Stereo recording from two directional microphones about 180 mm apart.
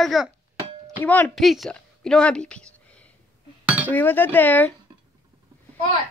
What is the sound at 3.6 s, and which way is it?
Chink, 10° right (ahead or behind).